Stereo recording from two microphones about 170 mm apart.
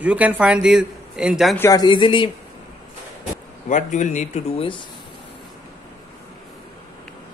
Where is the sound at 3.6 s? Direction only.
45° left (ahead or behind).